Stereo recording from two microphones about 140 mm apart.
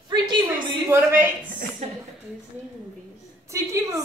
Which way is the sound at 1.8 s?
55° right (ahead or behind).